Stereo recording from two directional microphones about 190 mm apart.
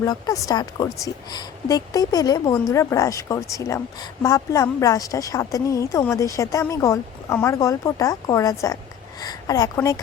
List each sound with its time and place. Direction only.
0.0 s speech: 20° left (ahead or behind)